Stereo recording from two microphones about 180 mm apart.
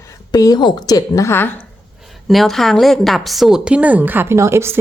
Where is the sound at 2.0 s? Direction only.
Centre (ahead or behind).